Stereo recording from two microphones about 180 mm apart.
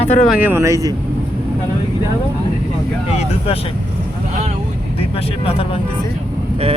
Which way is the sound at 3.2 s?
30° left (ahead or behind).